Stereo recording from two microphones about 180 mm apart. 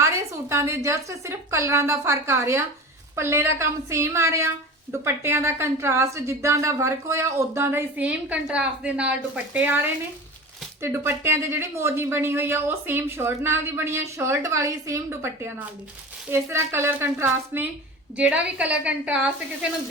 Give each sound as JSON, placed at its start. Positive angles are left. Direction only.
{"t": 0.0, "sound": "a woman's voice", "side_deg": -15}